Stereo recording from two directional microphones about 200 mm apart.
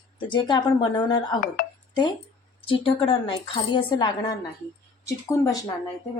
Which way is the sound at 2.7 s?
25° left (ahead or behind).